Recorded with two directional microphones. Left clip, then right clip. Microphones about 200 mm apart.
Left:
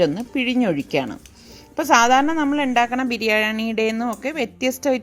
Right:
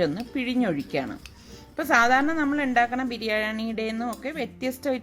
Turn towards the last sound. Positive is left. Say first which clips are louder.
# left 7 dB
turn(degrees=30)  # may be behind; listen again after turning